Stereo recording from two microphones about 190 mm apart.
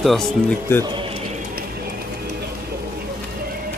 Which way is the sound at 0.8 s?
25° right (ahead or behind).